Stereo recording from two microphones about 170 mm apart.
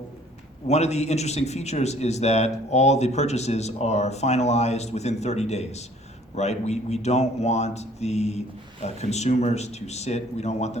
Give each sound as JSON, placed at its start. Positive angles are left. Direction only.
{"t": 0.7, "sound": "a man's voice", "side_deg": 40}